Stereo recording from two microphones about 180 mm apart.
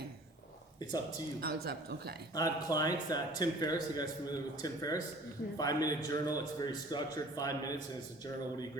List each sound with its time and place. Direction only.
1.4 s speech: 60° right (ahead or behind)
2.3 s a man's voice: 20° left (ahead or behind)